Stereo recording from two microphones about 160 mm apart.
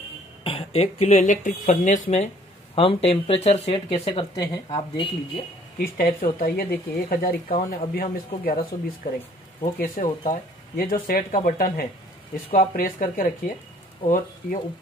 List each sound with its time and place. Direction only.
0.4 s speech: 35° left (ahead or behind)
2.7 s speech: 35° left (ahead or behind)
5.8 s speech: 65° left (ahead or behind)